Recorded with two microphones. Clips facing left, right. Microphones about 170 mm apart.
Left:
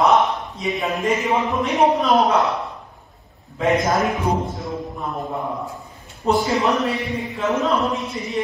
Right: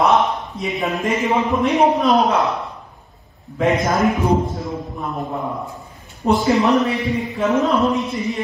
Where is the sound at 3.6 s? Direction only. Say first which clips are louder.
Right 2 dB; centre (ahead or behind).